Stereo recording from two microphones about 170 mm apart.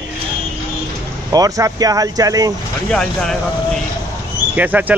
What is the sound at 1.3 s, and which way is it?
Speech, 20° right (ahead or behind).